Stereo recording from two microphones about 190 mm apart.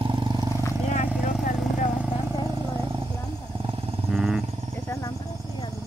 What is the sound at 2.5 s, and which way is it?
Vehicle, 25° right (ahead or behind).